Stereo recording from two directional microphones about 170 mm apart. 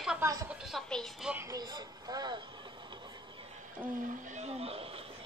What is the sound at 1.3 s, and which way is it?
Speech, 20° right (ahead or behind).